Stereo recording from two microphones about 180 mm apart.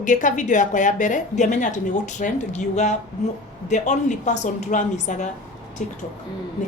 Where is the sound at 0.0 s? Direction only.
45° left (ahead or behind).